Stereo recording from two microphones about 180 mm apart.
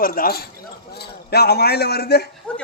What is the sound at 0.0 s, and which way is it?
Speech, 55° left (ahead or behind).